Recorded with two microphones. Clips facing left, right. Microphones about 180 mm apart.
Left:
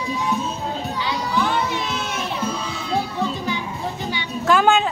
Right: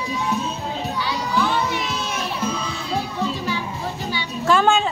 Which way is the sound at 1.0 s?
20° left (ahead or behind).